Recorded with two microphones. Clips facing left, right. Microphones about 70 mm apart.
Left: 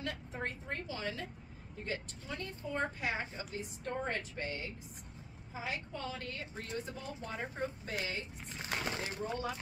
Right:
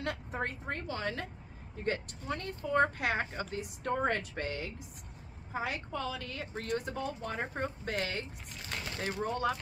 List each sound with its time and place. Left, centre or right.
0.0 s a woman's voice: right
5.5 s a woman's voice: right
8.5 s speech: left
9.0 s a woman's voice: right